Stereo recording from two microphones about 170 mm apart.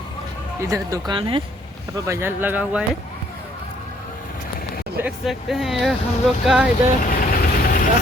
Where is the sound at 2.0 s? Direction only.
15° right (ahead or behind).